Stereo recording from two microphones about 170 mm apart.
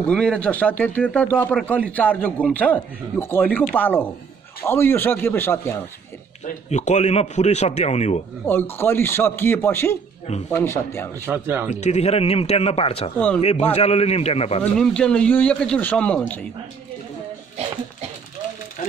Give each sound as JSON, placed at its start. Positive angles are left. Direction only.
{"t": 0.0, "sound": "speech", "side_deg": 5}
{"t": 6.4, "sound": "speech", "side_deg": 45}
{"t": 8.5, "sound": "speech", "side_deg": 15}
{"t": 11.2, "sound": "speech", "side_deg": -10}
{"t": 11.7, "sound": "speech", "side_deg": 40}
{"t": 14.6, "sound": "speech", "side_deg": 5}
{"t": 18.8, "sound": "a sound", "side_deg": 50}